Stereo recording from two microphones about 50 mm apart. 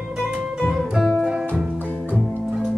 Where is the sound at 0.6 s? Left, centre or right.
Centre.